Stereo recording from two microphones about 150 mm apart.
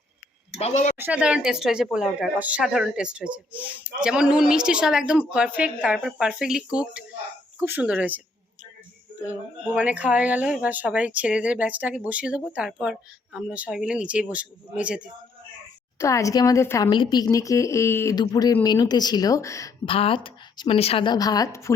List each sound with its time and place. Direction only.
0.6 s a woman's voice: 50° left (ahead or behind)
0.9 s speech: 10° right (ahead or behind)
9.7 s speech: 10° right (ahead or behind)
16.0 s speech: 20° left (ahead or behind)
16.9 s speech: 30° left (ahead or behind)
19.8 s a woman's voice: 35° left (ahead or behind)